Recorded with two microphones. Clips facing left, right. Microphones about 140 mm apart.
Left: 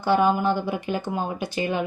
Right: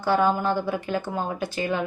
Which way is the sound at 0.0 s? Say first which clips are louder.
Left 1 dB; 15° left (ahead or behind).